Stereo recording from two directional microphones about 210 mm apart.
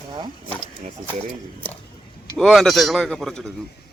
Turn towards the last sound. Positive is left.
turn(degrees=0)  # may be behind; listen again after turning